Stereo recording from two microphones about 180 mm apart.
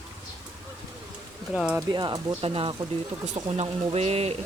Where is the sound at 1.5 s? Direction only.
Centre (ahead or behind).